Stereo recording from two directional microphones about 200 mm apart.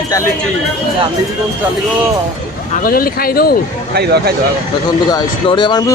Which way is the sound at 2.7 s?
45° left (ahead or behind).